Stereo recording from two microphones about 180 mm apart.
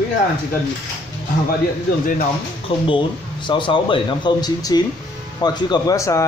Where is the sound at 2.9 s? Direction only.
25° left (ahead or behind).